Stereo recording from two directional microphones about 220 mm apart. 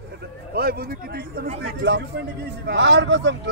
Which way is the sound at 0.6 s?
45° right (ahead or behind).